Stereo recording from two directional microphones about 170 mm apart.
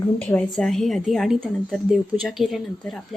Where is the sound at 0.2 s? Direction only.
5° left (ahead or behind).